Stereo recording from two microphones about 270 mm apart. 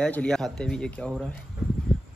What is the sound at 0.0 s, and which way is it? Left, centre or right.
Speech, centre.